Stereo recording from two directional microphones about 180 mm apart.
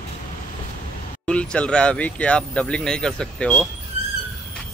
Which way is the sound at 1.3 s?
5° left (ahead or behind).